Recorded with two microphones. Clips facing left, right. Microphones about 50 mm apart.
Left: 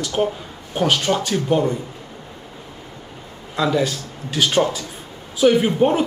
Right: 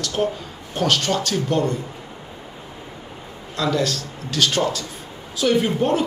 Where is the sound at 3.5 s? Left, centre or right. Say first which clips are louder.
Left 2 dB; centre.